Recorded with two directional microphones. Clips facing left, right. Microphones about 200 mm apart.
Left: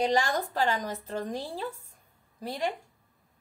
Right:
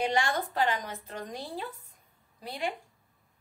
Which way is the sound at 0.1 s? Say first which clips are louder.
Left 2 dB; 40° left (ahead or behind).